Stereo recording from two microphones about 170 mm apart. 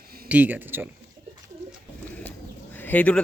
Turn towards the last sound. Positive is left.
turn(degrees=10)  # may be behind; listen again after turning